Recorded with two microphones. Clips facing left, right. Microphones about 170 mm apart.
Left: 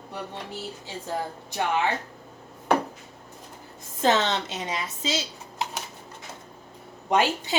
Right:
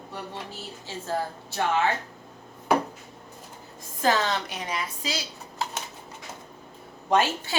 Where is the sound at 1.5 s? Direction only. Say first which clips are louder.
Even; 15° left (ahead or behind).